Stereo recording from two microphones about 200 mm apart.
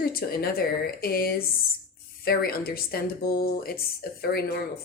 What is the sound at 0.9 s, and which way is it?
A woman's voice, 50° left (ahead or behind).